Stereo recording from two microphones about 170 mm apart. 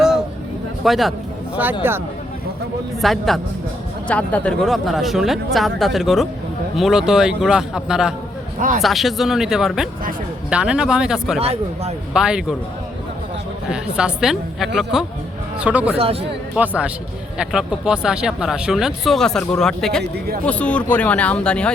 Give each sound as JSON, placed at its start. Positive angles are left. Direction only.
{"t": 0.9, "sound": "speech", "side_deg": 0}
{"t": 1.8, "sound": "a man's voice", "side_deg": -10}
{"t": 3.0, "sound": "speech", "side_deg": 0}
{"t": 11.3, "sound": "speech", "side_deg": -35}
{"t": 12.1, "sound": "speech", "side_deg": -5}
{"t": 13.7, "sound": "a man's voice", "side_deg": -5}
{"t": 20.1, "sound": "speech", "side_deg": -65}
{"t": 20.4, "sound": "speech", "side_deg": 5}